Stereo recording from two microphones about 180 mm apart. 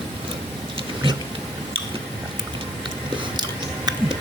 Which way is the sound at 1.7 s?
30° right (ahead or behind).